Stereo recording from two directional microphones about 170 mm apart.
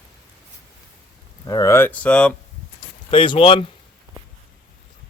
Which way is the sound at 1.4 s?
20° left (ahead or behind).